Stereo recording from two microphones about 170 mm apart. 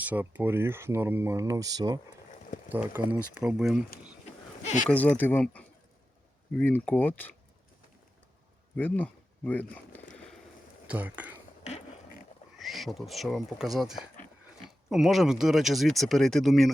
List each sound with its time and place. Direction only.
0.0 s speech: 10° right (ahead or behind)
2.6 s speech: 10° right (ahead or behind)
4.6 s speech: 45° left (ahead or behind)
4.9 s speech: 10° left (ahead or behind)
8.7 s a sound: 10° left (ahead or behind)
10.8 s speech: 10° right (ahead or behind)
12.5 s speech: centre (ahead or behind)